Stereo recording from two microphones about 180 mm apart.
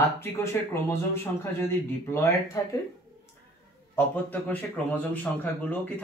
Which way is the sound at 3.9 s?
10° left (ahead or behind).